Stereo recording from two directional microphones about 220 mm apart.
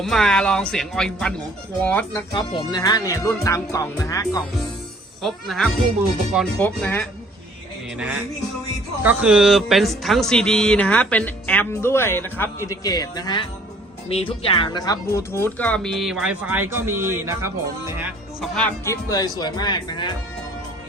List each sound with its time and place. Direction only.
0.0 s speech: centre (ahead or behind)
1.8 s music: 5° left (ahead or behind)
2.3 s speech: 20° left (ahead or behind)
3.4 s music: 15° left (ahead or behind)
5.2 s speech: centre (ahead or behind)
9.0 s speech: 5° right (ahead or behind)
18.3 s speech: 5° left (ahead or behind)
19.0 s speech: 15° left (ahead or behind)